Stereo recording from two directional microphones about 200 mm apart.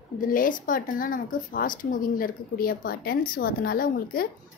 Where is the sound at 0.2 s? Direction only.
45° left (ahead or behind).